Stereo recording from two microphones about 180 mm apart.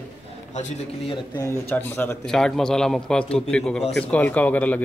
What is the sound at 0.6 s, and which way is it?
Speech, 30° left (ahead or behind).